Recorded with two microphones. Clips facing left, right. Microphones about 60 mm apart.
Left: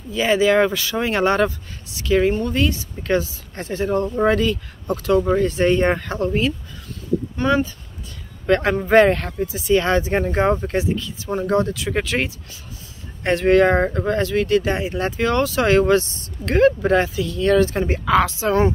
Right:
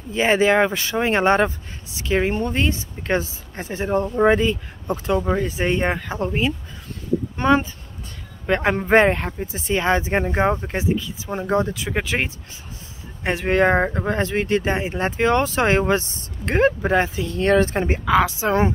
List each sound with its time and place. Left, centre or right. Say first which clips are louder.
0.1 s speech: even; right
5.1 s speech: left 5 dB; centre
6.1 s speech: left 2 dB; right
9.5 s speech: left 8 dB; right
9.8 s speech: even; right